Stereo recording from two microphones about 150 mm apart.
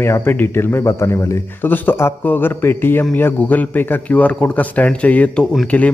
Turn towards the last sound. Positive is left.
turn(degrees=5)  # may be behind; listen again after turning